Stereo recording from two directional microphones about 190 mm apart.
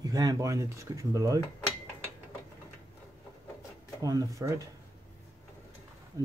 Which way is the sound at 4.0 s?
20° right (ahead or behind).